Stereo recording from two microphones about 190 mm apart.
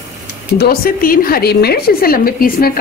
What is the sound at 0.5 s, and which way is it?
A woman's voice, 50° left (ahead or behind).